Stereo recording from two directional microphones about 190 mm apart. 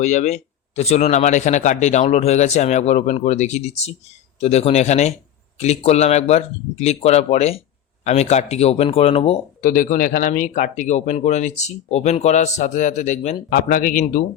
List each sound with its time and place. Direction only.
0.0 s speech: 40° left (ahead or behind)
9.6 s speech: 45° left (ahead or behind)